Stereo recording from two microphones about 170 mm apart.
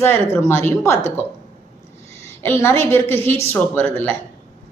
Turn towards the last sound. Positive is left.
turn(degrees=10)  # may be behind; listen again after turning